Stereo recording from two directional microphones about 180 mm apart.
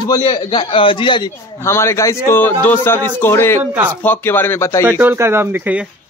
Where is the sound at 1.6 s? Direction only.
15° left (ahead or behind).